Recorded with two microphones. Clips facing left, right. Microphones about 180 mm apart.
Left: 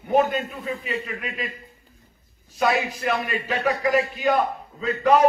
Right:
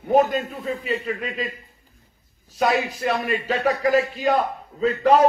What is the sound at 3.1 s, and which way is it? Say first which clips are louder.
Speech: right 3 dB; 35° right (ahead or behind).